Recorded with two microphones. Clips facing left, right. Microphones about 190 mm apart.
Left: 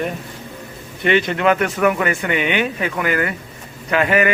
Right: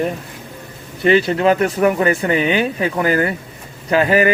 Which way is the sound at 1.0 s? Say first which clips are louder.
Right 3 dB; 35° right (ahead or behind).